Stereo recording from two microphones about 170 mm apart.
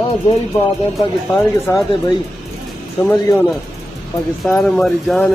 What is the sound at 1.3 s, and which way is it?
Speech, 15° left (ahead or behind).